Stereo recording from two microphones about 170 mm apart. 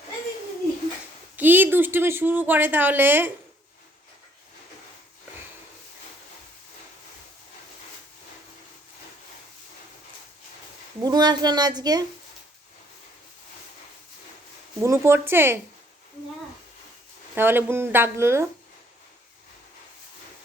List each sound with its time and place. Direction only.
1.4 s speech: 10° right (ahead or behind)
11.0 s speech: 25° right (ahead or behind)
14.8 s speech: 15° right (ahead or behind)
17.3 s speech: 10° right (ahead or behind)